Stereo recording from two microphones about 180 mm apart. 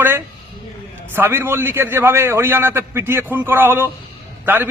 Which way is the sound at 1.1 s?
10° right (ahead or behind).